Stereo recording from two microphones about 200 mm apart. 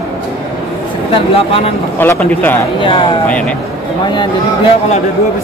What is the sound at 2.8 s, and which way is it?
Speech, 25° left (ahead or behind).